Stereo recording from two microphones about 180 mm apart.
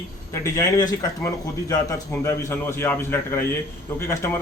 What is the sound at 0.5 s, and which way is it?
A man's voice, 20° left (ahead or behind).